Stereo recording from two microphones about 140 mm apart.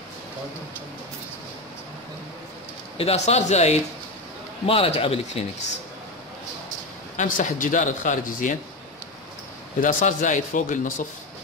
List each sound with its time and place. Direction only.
3.0 s a man's voice: 45° left (ahead or behind)
7.2 s speech: 65° left (ahead or behind)
9.8 s speech: 70° left (ahead or behind)